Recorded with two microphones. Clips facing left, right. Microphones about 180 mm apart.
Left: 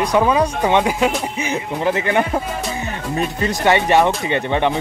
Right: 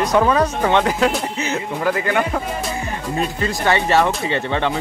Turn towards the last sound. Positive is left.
turn(degrees=15)  # may be behind; listen again after turning